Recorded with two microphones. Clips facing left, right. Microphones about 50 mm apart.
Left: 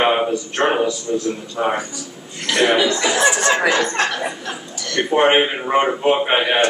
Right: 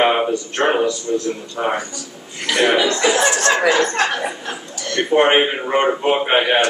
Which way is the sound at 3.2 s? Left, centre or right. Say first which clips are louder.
Even; centre.